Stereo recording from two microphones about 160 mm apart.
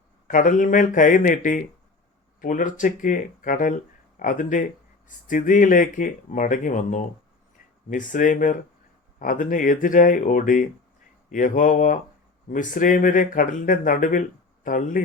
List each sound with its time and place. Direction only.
0.3 s speech: 55° left (ahead or behind)